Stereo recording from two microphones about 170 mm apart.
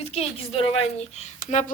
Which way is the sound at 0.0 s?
35° left (ahead or behind).